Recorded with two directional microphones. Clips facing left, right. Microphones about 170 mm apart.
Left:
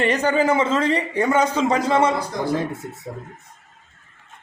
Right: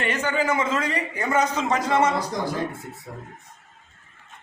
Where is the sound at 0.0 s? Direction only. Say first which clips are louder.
Left 6 dB; 35° left (ahead or behind).